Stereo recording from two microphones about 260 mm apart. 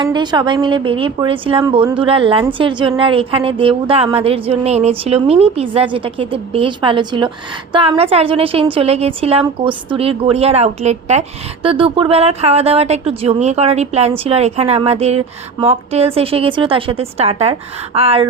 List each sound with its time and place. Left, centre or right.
0.0 s a woman's voice: centre